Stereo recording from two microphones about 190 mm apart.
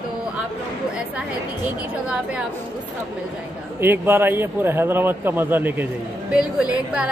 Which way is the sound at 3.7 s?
10° right (ahead or behind).